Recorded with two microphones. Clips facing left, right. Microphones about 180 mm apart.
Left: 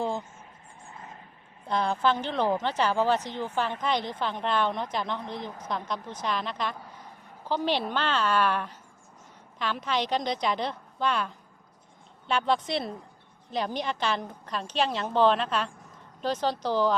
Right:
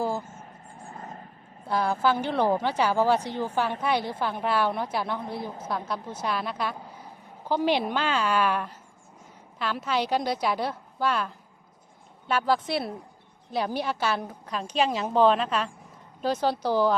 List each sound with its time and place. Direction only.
0.0 s vehicle: 5° right (ahead or behind)
0.9 s vehicle: 45° right (ahead or behind)
1.6 s a woman's voice: 5° right (ahead or behind)